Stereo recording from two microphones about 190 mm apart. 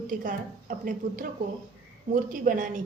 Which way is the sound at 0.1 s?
45° right (ahead or behind).